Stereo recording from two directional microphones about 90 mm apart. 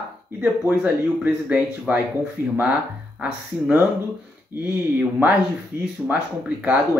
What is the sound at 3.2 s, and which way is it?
Speech, 20° right (ahead or behind).